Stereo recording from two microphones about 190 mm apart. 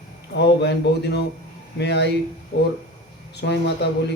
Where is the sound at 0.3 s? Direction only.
65° left (ahead or behind).